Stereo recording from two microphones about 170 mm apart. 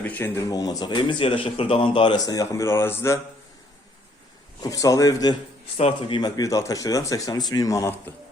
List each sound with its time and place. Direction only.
0.0 s speech: 10° left (ahead or behind)
4.6 s speech: 20° left (ahead or behind)
5.7 s speech: 30° left (ahead or behind)